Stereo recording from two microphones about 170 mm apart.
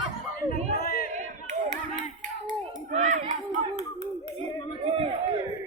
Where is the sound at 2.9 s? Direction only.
45° right (ahead or behind).